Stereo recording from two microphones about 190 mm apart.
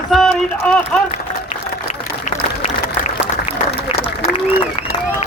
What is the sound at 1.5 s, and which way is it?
Applause, 40° left (ahead or behind).